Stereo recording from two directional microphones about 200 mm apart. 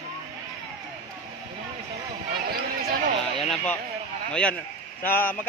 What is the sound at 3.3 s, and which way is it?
Speech, centre (ahead or behind).